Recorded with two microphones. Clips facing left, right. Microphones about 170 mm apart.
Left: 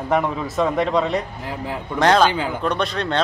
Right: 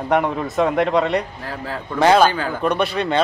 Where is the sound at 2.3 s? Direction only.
15° left (ahead or behind).